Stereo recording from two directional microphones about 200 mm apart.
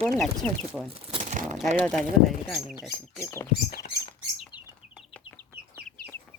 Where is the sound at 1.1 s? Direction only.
35° right (ahead or behind).